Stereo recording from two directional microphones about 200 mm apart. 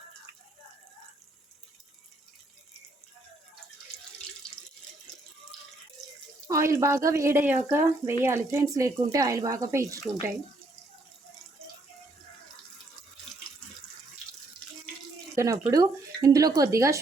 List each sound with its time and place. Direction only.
6.5 s speech: 15° right (ahead or behind)
15.4 s speech: 15° right (ahead or behind)